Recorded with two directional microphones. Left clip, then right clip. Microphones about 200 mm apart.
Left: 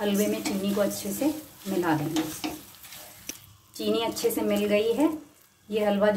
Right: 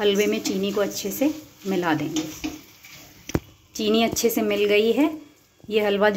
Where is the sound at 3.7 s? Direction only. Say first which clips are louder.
Right 6 dB; 40° right (ahead or behind).